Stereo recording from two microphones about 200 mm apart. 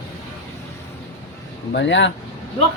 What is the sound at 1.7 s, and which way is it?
Speech, 65° left (ahead or behind).